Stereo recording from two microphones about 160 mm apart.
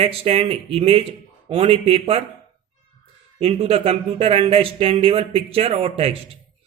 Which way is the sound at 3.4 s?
35° right (ahead or behind).